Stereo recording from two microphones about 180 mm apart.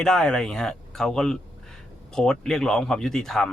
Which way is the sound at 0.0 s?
5° left (ahead or behind).